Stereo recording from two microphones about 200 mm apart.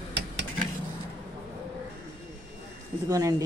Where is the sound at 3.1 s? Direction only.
15° right (ahead or behind).